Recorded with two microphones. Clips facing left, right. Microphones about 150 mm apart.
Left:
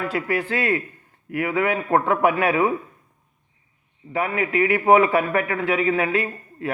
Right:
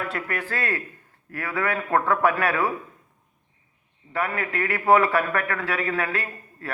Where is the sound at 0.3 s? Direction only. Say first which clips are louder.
Left 6 dB; 25° left (ahead or behind).